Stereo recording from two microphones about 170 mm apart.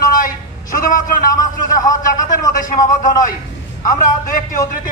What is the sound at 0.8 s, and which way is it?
Speech, 50° left (ahead or behind).